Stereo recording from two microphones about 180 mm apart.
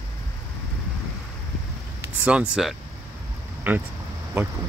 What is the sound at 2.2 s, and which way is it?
Speech, 5° right (ahead or behind).